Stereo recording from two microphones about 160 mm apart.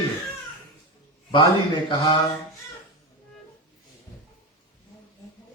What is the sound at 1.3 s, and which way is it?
Speech, 30° left (ahead or behind).